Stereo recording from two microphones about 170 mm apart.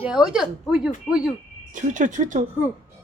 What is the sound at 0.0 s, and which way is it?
Speech, 5° right (ahead or behind).